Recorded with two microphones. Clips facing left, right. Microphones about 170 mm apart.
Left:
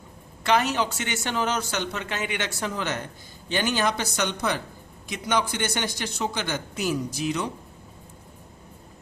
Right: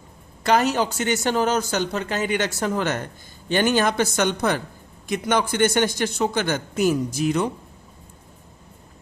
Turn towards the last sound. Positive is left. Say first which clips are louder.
# right 6 dB
turn(degrees=-50)  # may be behind; listen again after turning